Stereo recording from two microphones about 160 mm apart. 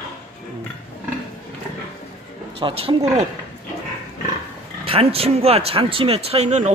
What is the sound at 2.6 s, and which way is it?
Speech, 35° right (ahead or behind).